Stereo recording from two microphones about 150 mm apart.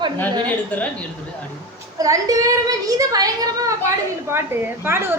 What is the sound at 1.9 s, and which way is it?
A woman's voice, 25° right (ahead or behind).